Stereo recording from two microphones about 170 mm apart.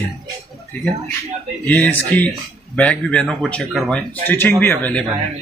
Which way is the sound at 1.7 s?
10° left (ahead or behind).